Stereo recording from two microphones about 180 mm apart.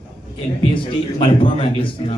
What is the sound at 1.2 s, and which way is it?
Speech, 30° left (ahead or behind).